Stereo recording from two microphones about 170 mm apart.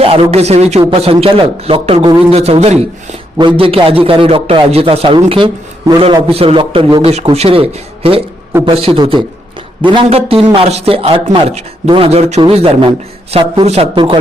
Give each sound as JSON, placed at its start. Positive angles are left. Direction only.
{"t": 0.0, "sound": "speech", "side_deg": -35}